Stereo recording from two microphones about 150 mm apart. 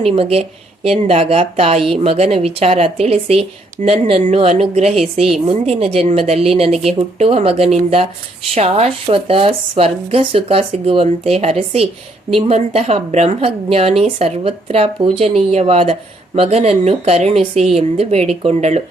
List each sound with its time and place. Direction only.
0.0 s speech: 40° right (ahead or behind)